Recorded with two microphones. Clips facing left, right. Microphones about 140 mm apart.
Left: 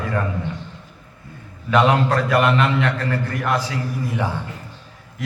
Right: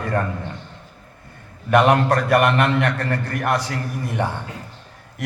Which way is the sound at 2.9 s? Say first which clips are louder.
Even; 40° right (ahead or behind).